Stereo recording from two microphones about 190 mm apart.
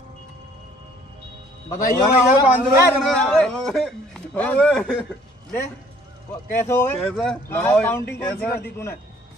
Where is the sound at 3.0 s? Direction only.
Centre (ahead or behind).